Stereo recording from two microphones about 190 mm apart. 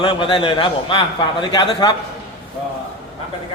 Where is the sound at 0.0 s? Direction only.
25° left (ahead or behind).